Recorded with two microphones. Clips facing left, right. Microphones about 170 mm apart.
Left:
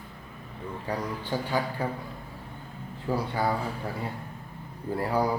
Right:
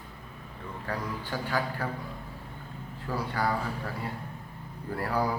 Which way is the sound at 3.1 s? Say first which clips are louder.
Left 3 dB; 20° left (ahead or behind).